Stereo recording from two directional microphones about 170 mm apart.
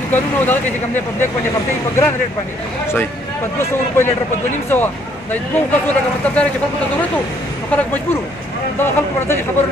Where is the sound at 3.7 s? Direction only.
15° left (ahead or behind).